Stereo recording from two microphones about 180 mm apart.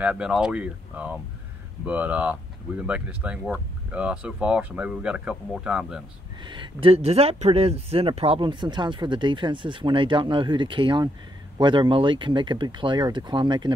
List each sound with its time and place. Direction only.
0.0 s speech: 5° right (ahead or behind)
6.4 s speech: 25° right (ahead or behind)